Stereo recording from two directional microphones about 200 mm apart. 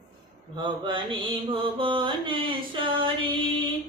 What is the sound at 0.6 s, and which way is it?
Mantra, 25° right (ahead or behind).